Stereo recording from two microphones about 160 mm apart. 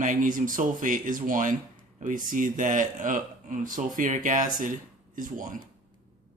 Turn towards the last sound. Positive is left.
turn(degrees=-55)  # may be behind; listen again after turning